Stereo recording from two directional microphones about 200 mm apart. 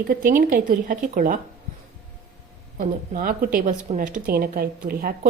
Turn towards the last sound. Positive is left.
turn(degrees=-45)  # may be behind; listen again after turning